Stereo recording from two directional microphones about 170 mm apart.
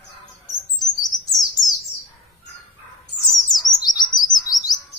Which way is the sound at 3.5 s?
25° left (ahead or behind).